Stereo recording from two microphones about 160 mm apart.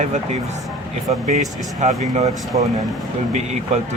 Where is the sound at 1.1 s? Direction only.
45° right (ahead or behind).